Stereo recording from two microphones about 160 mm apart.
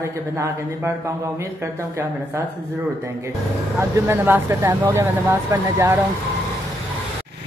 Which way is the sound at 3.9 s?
15° right (ahead or behind).